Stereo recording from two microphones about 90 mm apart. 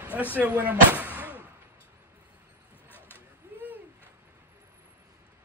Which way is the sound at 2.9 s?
20° left (ahead or behind).